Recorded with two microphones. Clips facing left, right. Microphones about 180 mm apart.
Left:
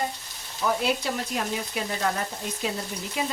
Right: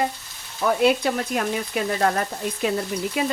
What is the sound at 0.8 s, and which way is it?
Speech, 60° right (ahead or behind).